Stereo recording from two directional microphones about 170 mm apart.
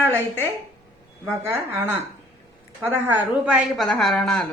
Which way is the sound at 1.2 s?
10° right (ahead or behind).